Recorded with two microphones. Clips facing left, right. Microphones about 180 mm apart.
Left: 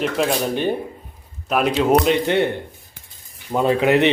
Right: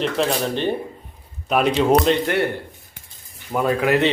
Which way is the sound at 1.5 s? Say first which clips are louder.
Even; centre (ahead or behind).